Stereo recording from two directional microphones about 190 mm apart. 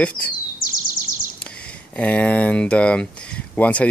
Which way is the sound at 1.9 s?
5° left (ahead or behind).